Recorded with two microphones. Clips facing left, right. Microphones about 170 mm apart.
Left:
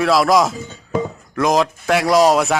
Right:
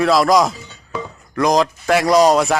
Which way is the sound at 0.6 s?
45° left (ahead or behind).